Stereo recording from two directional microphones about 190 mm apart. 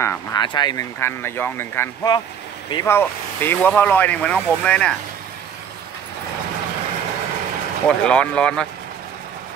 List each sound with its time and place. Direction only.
0.0 s speech: 15° left (ahead or behind)
0.9 s speech: 10° left (ahead or behind)
8.0 s speech: 5° left (ahead or behind)